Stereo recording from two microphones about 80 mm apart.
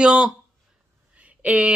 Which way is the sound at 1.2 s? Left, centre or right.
Centre.